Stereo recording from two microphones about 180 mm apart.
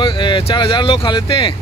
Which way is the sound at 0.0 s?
25° left (ahead or behind).